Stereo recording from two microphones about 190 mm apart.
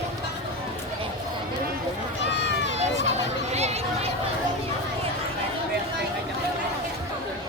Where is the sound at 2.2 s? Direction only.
65° left (ahead or behind).